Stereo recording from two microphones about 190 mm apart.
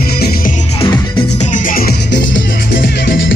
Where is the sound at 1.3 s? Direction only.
40° left (ahead or behind); by 2.6 s 75° left (ahead or behind).